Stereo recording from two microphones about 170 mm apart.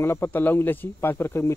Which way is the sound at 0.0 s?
15° left (ahead or behind).